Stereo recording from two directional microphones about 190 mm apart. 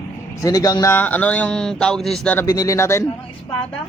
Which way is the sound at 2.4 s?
20° left (ahead or behind).